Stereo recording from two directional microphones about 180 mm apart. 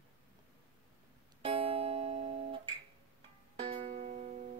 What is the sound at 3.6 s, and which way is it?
Music, 35° right (ahead or behind).